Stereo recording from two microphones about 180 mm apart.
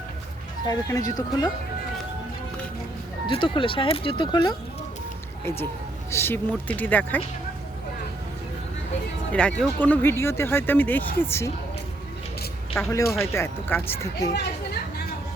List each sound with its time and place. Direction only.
0.7 s speech: 20° left (ahead or behind)
3.2 s speech: 25° left (ahead or behind)
6.1 s speech: 15° left (ahead or behind)
9.3 s speech: 5° left (ahead or behind)
12.7 s speech: 15° left (ahead or behind)